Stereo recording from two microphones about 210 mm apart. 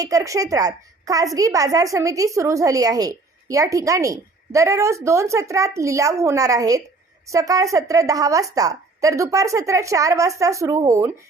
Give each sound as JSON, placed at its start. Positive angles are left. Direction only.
{"t": 0.0, "sound": "a woman's voice", "side_deg": -15}